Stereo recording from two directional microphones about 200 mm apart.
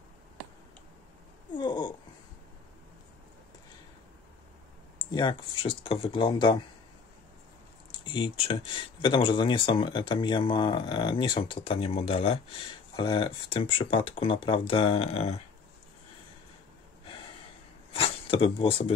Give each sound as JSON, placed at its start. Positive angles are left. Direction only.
{"t": 1.6, "sound": "a sound", "side_deg": 20}
{"t": 5.1, "sound": "speech", "side_deg": 25}
{"t": 8.0, "sound": "speech", "side_deg": 25}
{"t": 17.9, "sound": "speech", "side_deg": 25}